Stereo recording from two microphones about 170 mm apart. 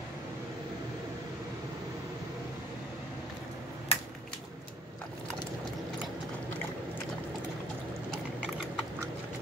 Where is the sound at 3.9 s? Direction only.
40° left (ahead or behind).